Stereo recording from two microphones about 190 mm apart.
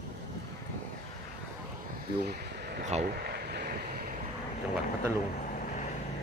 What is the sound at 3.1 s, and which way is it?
Boat, 55° right (ahead or behind).